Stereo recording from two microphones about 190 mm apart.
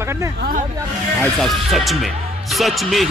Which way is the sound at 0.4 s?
45° right (ahead or behind).